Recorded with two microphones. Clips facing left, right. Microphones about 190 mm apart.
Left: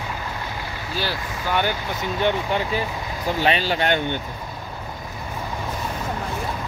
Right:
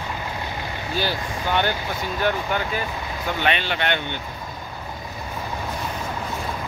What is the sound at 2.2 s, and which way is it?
Speech, 30° left (ahead or behind).